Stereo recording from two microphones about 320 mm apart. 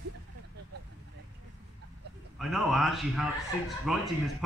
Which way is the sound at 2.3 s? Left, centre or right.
Centre.